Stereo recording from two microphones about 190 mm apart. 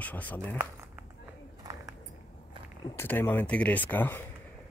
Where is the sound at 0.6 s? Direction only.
15° right (ahead or behind).